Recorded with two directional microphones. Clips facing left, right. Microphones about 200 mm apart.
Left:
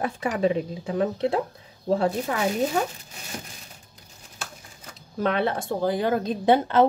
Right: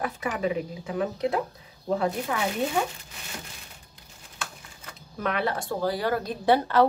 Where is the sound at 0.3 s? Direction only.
30° left (ahead or behind).